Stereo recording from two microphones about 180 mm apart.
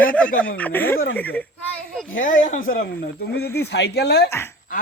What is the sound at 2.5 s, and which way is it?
Speech, 50° left (ahead or behind).